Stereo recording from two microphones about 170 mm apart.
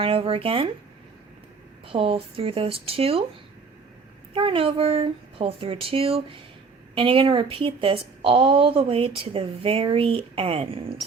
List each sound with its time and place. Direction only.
0.0 s a woman's voice: 35° right (ahead or behind)
1.9 s a woman's voice: 35° right (ahead or behind)
4.4 s a woman's voice: 30° right (ahead or behind)